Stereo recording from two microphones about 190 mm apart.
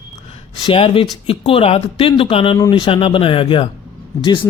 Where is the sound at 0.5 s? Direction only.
25° left (ahead or behind).